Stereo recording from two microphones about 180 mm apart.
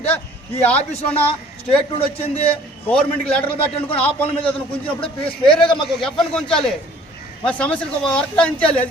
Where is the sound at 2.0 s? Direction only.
30° left (ahead or behind).